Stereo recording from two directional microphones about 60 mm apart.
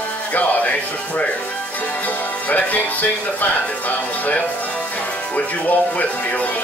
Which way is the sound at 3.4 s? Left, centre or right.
Left.